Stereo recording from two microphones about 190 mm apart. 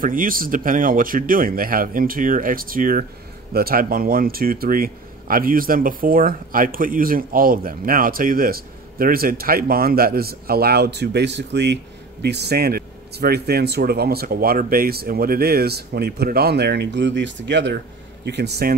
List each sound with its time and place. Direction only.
0.0 s speech: 45° right (ahead or behind)